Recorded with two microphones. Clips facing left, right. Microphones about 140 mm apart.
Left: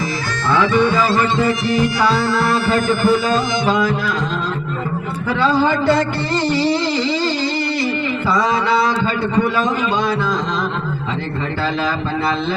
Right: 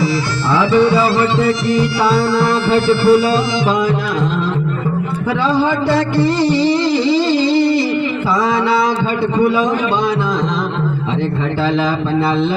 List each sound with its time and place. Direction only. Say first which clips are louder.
2.1 s music: right 3 dB; centre (ahead or behind)
2.8 s speech: right 3 dB; 45° left (ahead or behind)